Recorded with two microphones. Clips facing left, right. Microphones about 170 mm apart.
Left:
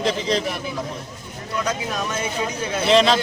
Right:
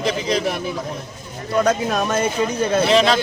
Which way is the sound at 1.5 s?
55° right (ahead or behind).